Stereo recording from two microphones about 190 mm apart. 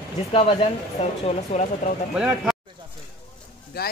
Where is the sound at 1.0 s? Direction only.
35° left (ahead or behind).